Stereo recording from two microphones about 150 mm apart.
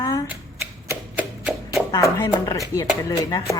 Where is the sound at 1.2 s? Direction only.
5° right (ahead or behind).